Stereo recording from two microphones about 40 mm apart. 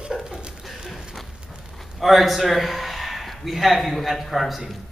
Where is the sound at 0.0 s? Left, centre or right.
Centre.